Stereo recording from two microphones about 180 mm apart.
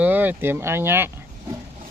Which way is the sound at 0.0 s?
10° right (ahead or behind).